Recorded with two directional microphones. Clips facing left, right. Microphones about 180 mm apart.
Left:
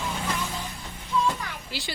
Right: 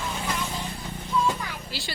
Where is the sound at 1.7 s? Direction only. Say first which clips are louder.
Left 1 dB; 15° left (ahead or behind).